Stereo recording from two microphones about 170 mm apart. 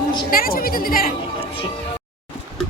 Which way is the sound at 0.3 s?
55° left (ahead or behind).